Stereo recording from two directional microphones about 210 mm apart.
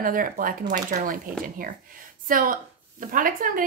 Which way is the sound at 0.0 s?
40° right (ahead or behind).